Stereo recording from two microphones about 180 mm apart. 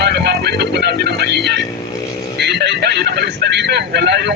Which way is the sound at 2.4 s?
70° right (ahead or behind).